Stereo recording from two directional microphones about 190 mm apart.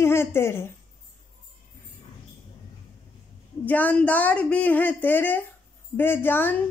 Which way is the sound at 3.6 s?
10° left (ahead or behind).